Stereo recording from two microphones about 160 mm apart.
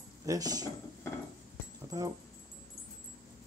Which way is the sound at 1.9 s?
20° right (ahead or behind).